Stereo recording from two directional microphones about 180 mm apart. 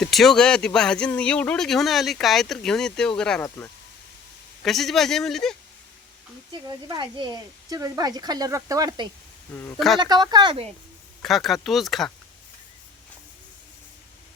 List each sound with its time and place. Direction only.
0.0 s speech: centre (ahead or behind)
4.6 s speech: centre (ahead or behind)
6.5 s speech: 25° right (ahead or behind)
11.2 s speech: centre (ahead or behind)